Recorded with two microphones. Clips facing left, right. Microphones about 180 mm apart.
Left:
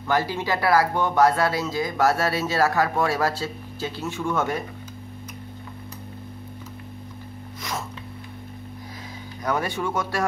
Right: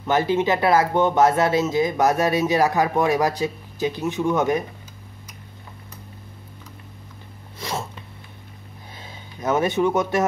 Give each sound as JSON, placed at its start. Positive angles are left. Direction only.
{"t": 0.0, "sound": "speech", "side_deg": -20}
{"t": 9.4, "sound": "speech", "side_deg": -20}